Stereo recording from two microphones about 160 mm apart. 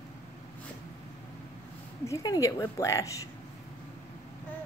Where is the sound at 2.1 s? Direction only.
20° left (ahead or behind).